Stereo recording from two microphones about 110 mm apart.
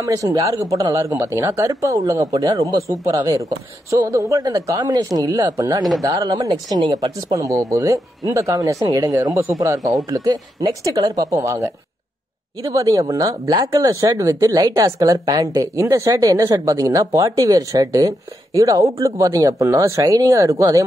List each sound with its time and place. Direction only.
0.0 s speech: 30° right (ahead or behind)